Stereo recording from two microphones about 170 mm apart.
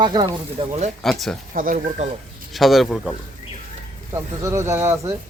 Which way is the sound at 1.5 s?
50° right (ahead or behind).